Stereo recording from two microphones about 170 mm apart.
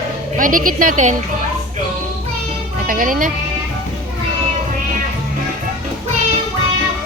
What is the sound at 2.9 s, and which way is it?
Speech, 50° right (ahead or behind).